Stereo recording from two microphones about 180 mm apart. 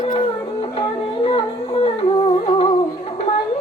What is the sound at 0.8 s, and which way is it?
Music, 30° left (ahead or behind).